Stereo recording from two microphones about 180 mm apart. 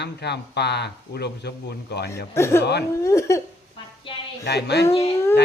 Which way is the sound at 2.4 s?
15° left (ahead or behind).